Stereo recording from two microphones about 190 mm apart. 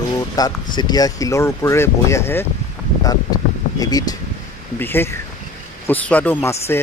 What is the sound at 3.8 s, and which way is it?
Speech, 20° left (ahead or behind).